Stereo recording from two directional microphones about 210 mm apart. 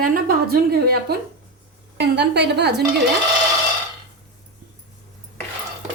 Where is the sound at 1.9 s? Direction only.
55° right (ahead or behind).